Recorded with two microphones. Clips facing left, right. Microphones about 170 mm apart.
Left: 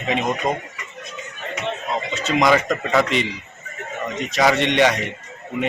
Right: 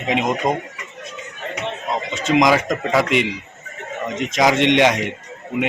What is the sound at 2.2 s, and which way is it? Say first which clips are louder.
Speech: right 2 dB; 15° right (ahead or behind).